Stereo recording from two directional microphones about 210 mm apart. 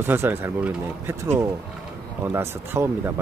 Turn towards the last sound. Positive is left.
turn(degrees=-15)  # may be behind; listen again after turning